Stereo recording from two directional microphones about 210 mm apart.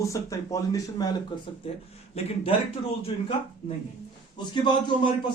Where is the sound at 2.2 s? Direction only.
30° left (ahead or behind).